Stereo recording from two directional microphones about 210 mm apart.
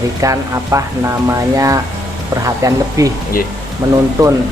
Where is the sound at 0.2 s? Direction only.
15° right (ahead or behind).